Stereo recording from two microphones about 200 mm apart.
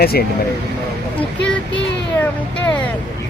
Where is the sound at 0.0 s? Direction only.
50° left (ahead or behind).